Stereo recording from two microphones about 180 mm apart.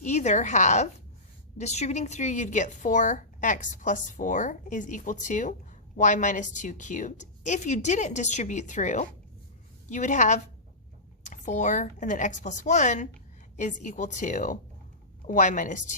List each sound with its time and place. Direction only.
0.0 s a woman's voice: 40° left (ahead or behind)